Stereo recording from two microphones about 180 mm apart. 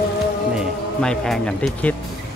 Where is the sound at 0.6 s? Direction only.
Centre (ahead or behind).